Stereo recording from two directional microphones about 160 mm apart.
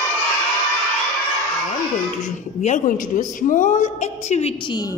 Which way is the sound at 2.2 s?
50° left (ahead or behind).